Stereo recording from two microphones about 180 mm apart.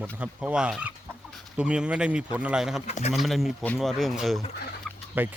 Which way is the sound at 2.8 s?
35° left (ahead or behind).